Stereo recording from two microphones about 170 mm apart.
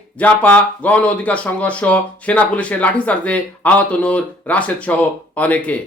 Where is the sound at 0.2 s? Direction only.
10° left (ahead or behind).